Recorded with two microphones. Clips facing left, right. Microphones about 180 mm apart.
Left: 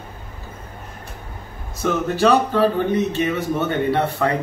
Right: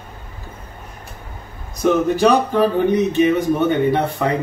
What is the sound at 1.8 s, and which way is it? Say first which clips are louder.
Speech: right 4 dB; 15° right (ahead or behind).